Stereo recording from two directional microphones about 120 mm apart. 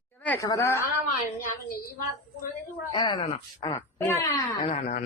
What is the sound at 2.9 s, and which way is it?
Speech, 40° left (ahead or behind).